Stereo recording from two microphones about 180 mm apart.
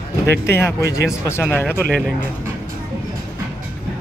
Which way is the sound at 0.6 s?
15° left (ahead or behind).